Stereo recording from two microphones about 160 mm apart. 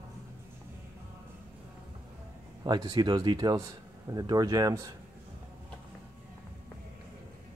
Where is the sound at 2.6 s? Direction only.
25° right (ahead or behind).